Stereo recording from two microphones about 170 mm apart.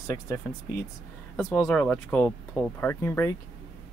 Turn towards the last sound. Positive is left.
turn(degrees=15)  # may be behind; listen again after turning